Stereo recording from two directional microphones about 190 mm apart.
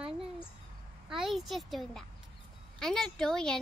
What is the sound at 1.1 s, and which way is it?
Speech, centre (ahead or behind).